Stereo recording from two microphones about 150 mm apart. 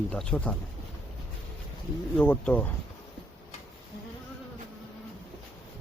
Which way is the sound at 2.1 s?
10° left (ahead or behind).